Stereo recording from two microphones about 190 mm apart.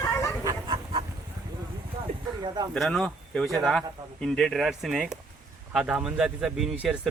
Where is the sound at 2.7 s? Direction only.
Centre (ahead or behind).